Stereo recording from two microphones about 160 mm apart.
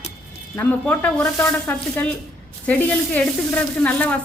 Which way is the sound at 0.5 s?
10° left (ahead or behind).